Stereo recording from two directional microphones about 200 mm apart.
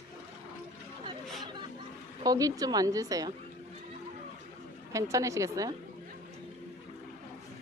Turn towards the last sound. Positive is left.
turn(degrees=-15)  # may be behind; listen again after turning